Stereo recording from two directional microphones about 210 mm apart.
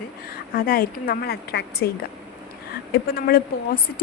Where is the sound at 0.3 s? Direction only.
45° left (ahead or behind).